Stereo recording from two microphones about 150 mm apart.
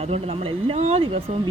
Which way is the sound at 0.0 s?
40° right (ahead or behind).